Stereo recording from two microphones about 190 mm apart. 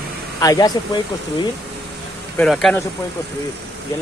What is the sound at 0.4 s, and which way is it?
Speech, 20° left (ahead or behind).